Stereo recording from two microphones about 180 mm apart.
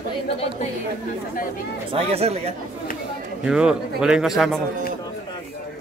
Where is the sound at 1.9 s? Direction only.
35° right (ahead or behind).